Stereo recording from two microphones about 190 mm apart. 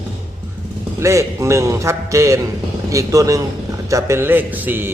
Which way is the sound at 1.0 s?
15° right (ahead or behind).